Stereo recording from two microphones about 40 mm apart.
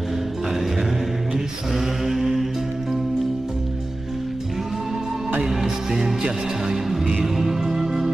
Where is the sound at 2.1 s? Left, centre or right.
Centre.